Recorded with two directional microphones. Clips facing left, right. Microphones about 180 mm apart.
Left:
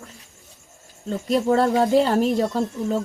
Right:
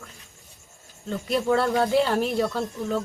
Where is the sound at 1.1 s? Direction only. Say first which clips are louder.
Left 3 dB; 35° left (ahead or behind).